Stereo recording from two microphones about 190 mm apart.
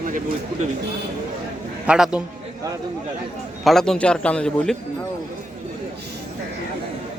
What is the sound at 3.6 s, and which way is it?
A man's voice, centre (ahead or behind).